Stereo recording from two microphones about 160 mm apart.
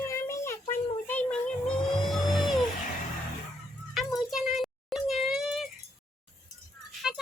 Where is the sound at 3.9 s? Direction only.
Centre (ahead or behind).